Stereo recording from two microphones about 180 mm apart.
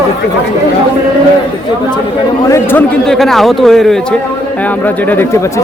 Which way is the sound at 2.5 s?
10° left (ahead or behind).